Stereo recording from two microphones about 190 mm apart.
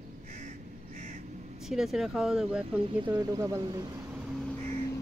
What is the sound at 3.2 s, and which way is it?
Speech, 15° right (ahead or behind).